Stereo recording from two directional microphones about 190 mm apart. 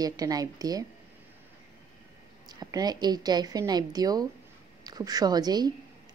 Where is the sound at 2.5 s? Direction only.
20° right (ahead or behind).